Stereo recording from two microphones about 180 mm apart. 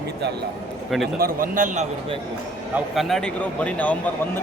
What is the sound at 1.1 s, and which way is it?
Speech, 55° right (ahead or behind).